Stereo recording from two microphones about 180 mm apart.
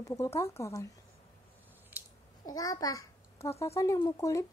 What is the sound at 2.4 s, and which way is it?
A child's voice, 20° left (ahead or behind).